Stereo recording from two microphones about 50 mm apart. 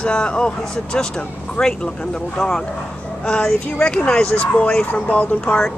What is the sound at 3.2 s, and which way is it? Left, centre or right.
Speech, left.